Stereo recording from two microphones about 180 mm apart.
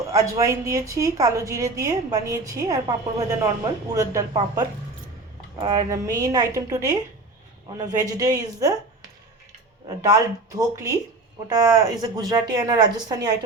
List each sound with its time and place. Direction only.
0.1 s a woman's voice: 20° right (ahead or behind)
10.0 s a woman's voice: 20° right (ahead or behind)